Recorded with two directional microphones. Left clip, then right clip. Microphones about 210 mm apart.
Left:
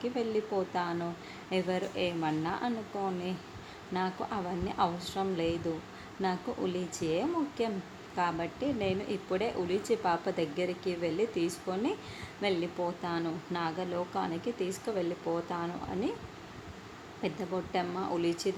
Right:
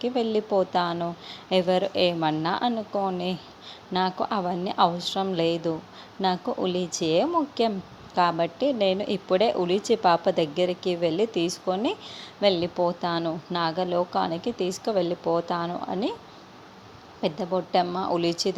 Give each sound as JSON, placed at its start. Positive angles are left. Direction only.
{"t": 0.0, "sound": "a woman's voice", "side_deg": -30}
{"t": 17.2, "sound": "a woman's voice", "side_deg": -30}